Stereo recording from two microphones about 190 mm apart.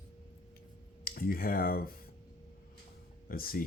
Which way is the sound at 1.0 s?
50° left (ahead or behind).